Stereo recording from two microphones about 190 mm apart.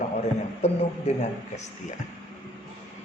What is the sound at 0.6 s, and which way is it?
A man's voice, 35° left (ahead or behind).